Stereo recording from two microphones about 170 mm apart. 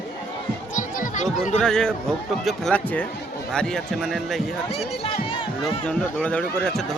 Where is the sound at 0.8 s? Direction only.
45° left (ahead or behind).